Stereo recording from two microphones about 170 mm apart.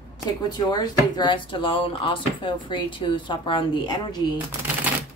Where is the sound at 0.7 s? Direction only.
25° left (ahead or behind).